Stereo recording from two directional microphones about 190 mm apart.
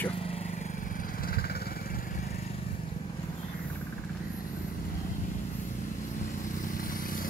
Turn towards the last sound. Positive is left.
turn(degrees=45)  # may be behind; listen again after turning